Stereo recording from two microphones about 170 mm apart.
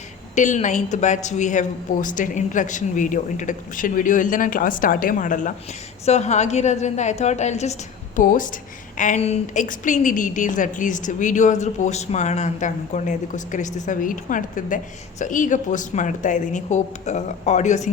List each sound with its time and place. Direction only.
0.3 s a woman's voice: 45° left (ahead or behind)